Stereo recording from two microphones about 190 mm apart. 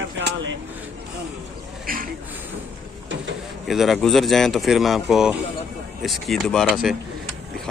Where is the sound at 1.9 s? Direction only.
50° right (ahead or behind).